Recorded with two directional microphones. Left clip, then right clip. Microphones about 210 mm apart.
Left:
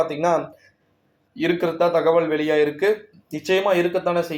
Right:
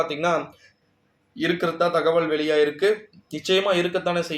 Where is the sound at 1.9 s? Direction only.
10° left (ahead or behind).